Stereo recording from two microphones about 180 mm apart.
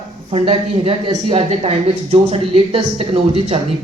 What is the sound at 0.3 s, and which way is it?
A woman's voice, 35° right (ahead or behind).